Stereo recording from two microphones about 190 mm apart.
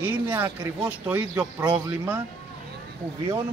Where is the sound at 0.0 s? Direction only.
10° right (ahead or behind).